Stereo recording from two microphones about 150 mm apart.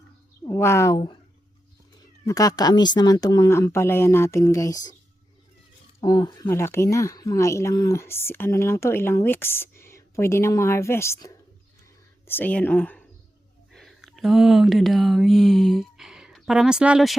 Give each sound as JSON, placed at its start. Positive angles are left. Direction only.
{"t": 0.4, "sound": "speech", "side_deg": 20}
{"t": 2.2, "sound": "speech", "side_deg": 25}
{"t": 6.0, "sound": "speech", "side_deg": 25}
{"t": 13.7, "sound": "a sound", "side_deg": 0}